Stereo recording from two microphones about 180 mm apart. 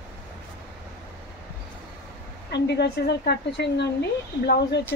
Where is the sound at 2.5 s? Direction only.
70° left (ahead or behind).